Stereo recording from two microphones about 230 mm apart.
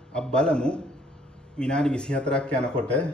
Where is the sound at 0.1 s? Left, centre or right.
Centre.